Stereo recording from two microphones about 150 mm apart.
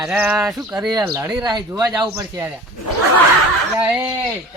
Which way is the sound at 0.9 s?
25° right (ahead or behind).